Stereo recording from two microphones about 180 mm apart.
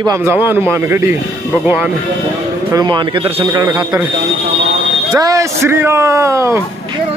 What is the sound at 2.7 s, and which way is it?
Speech, 25° right (ahead or behind).